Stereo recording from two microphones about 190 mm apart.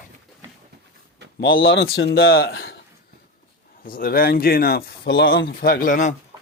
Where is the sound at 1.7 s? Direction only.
70° left (ahead or behind).